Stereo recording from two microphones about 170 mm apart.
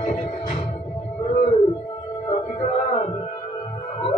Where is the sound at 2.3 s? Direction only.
35° left (ahead or behind).